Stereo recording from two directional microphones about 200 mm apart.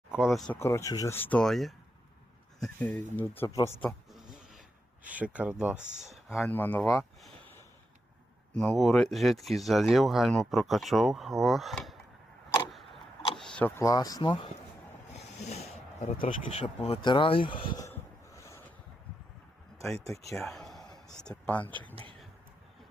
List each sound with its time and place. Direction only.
0.4 s speech: 15° left (ahead or behind)
3.8 s a sound: centre (ahead or behind)
5.1 s speech: 5° right (ahead or behind); by 7.0 s 10° left (ahead or behind)
8.5 s speech: 5° left (ahead or behind)
13.4 s speech: 5° left (ahead or behind); by 14.5 s 25° left (ahead or behind)
15.1 s a sound: 35° left (ahead or behind)
16.6 s speech: 30° left (ahead or behind)
20.3 s a man's voice: centre (ahead or behind)